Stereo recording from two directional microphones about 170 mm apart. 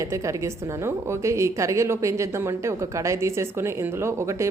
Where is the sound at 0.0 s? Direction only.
15° right (ahead or behind).